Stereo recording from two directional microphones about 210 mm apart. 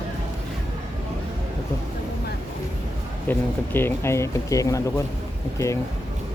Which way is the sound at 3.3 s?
10° left (ahead or behind).